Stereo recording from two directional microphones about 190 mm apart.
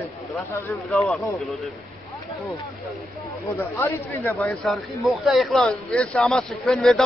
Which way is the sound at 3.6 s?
10° left (ahead or behind).